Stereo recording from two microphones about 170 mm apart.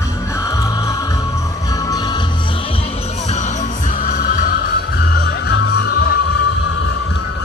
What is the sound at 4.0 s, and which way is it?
Music, 55° left (ahead or behind).